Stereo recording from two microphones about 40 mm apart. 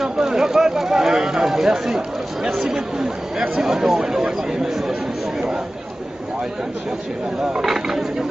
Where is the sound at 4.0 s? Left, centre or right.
Right.